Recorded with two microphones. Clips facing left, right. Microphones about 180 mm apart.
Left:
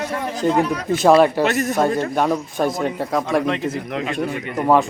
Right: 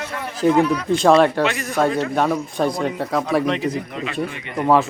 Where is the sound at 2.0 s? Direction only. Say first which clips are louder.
Even; centre (ahead or behind).